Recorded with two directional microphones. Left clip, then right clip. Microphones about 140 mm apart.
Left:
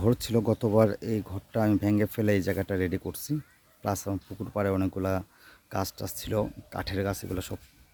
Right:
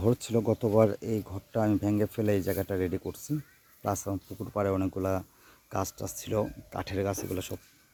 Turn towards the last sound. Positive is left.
turn(degrees=15)  # may be behind; listen again after turning